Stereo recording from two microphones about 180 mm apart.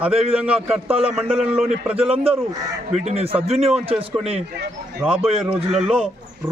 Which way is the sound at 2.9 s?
35° right (ahead or behind).